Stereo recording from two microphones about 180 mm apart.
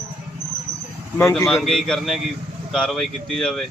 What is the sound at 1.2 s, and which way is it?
Speech, 15° left (ahead or behind).